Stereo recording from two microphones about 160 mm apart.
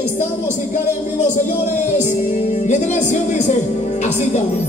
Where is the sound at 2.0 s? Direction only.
45° left (ahead or behind).